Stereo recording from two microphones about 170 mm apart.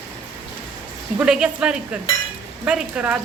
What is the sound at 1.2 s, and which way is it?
Speech, 5° right (ahead or behind).